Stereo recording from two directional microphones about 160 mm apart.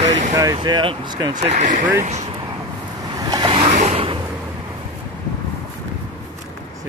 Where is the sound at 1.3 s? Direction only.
50° right (ahead or behind).